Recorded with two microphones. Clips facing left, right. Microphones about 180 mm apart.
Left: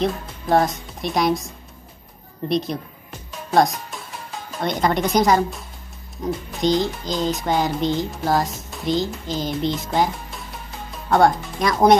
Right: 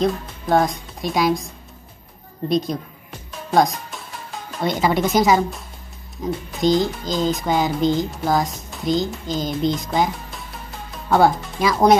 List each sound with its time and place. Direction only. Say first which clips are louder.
0.0 s speech: right 2 dB; centre (ahead or behind)
2.5 s music: right 2 dB; centre (ahead or behind)